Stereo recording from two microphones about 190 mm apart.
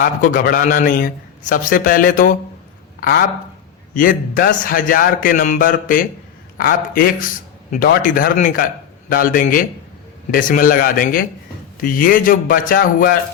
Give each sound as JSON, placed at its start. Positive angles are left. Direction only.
{"t": 0.0, "sound": "a man's voice", "side_deg": 45}